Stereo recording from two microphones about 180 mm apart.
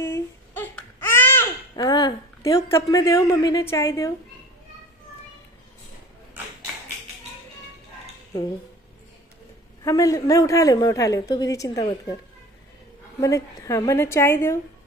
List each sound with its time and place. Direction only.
0.0 s baby cry: 15° left (ahead or behind)
3.7 s a woman's voice: 15° left (ahead or behind)
9.8 s a woman's voice: 20° left (ahead or behind)
13.2 s a woman's voice: 15° left (ahead or behind)